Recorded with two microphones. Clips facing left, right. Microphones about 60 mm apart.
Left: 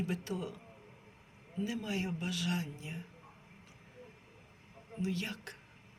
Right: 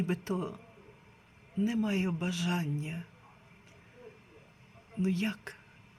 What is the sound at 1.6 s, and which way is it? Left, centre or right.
Speech, right.